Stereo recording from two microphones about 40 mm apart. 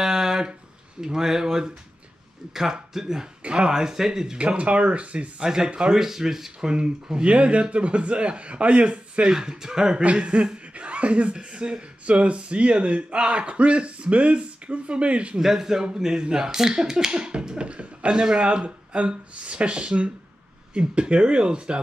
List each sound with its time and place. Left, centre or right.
0.0 s a sound: centre
1.0 s speech: centre
4.4 s speech: right
5.4 s speech: centre
6.7 s speech: right
9.3 s speech: centre
10.0 s speech: right
11.3 s speech: right
15.3 s speech: centre